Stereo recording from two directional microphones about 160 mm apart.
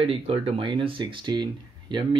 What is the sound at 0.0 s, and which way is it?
Speech, 35° right (ahead or behind).